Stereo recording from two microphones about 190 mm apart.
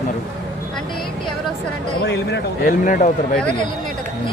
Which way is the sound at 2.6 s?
45° left (ahead or behind).